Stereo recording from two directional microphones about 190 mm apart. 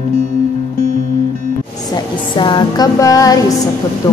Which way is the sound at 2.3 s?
25° left (ahead or behind).